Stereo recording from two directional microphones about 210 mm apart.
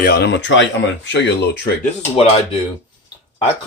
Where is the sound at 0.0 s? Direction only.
50° left (ahead or behind).